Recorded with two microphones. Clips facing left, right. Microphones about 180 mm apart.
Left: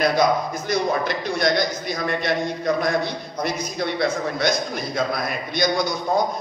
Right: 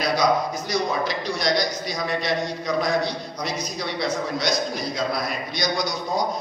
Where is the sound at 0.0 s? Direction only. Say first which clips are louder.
Left 2 dB; 55° left (ahead or behind).